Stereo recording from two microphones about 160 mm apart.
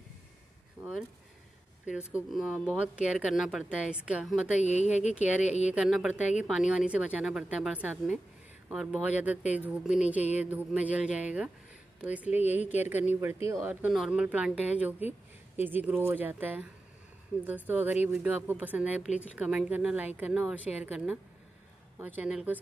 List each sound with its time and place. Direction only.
0.8 s a sound: 10° right (ahead or behind)
1.9 s speech: 5° right (ahead or behind)
4.6 s a woman's voice: 45° left (ahead or behind)
5.7 s speech: 5° right (ahead or behind)